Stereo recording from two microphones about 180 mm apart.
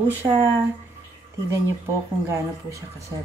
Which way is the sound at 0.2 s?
15° right (ahead or behind).